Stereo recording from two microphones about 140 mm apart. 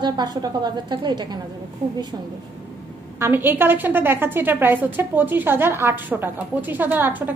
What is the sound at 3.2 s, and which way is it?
A woman's voice, 15° right (ahead or behind).